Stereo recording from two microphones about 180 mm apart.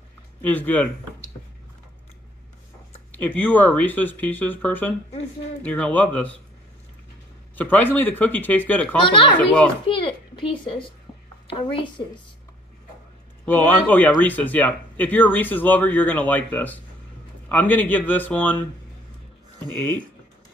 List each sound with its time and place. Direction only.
0.4 s speech: 10° left (ahead or behind)
3.2 s speech: 10° left (ahead or behind)
7.5 s speech: 10° left (ahead or behind)
9.0 s a child's voice: 30° left (ahead or behind)
9.4 s speech: 10° left (ahead or behind)
9.8 s a child's voice: 30° left (ahead or behind)
13.5 s speech: 10° left (ahead or behind)